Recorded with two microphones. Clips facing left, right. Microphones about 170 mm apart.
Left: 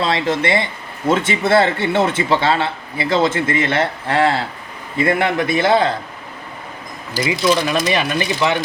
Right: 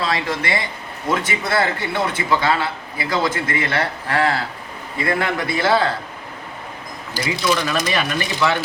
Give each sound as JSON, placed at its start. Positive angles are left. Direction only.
{"t": 0.0, "sound": "speech", "side_deg": 25}
{"t": 7.3, "sound": "speech", "side_deg": 25}